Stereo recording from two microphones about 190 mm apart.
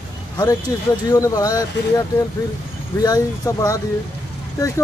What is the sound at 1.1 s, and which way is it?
Speech, 20° left (ahead or behind).